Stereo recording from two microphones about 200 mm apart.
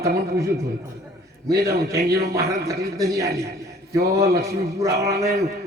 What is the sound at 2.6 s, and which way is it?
Speech, 15° right (ahead or behind).